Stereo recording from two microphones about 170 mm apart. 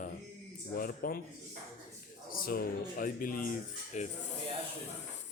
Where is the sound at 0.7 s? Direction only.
60° left (ahead or behind).